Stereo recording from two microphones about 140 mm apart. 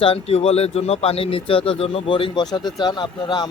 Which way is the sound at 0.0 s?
45° left (ahead or behind).